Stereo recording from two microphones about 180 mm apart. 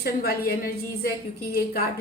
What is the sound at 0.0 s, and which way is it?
A woman's voice, 55° left (ahead or behind).